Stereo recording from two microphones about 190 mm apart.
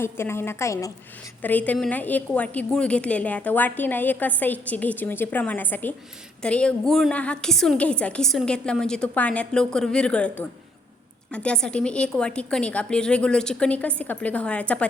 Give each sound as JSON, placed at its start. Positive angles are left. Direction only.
{"t": 0.0, "sound": "a woman's voice", "side_deg": 15}